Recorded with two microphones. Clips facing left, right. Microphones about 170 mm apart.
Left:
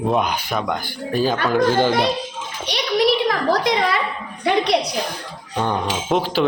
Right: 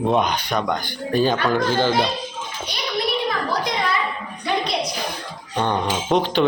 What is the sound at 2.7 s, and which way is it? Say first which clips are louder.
Speech: left 7 dB; 80° left.